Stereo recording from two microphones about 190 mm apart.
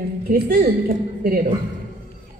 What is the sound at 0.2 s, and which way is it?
A woman's voice, 50° right (ahead or behind).